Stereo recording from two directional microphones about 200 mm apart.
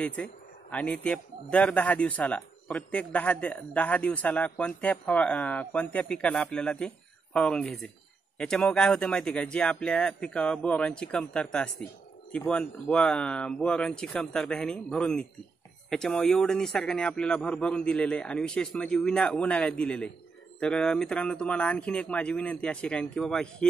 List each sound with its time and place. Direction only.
0.0 s a man's voice: 5° left (ahead or behind)